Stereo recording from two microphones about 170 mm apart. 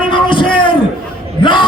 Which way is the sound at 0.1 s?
30° left (ahead or behind).